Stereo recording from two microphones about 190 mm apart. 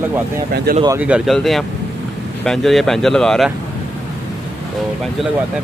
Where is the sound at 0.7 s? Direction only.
50° right (ahead or behind).